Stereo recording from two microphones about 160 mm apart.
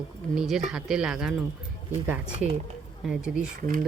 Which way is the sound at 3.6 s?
55° right (ahead or behind).